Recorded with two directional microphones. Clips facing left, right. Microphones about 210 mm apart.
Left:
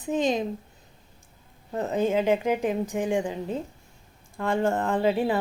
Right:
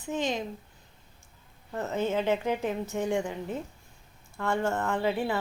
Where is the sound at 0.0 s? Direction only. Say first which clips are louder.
Left 6 dB; 20° left (ahead or behind).